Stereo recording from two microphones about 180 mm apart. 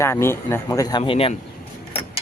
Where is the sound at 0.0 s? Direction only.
15° left (ahead or behind); by 1.4 s 30° left (ahead or behind).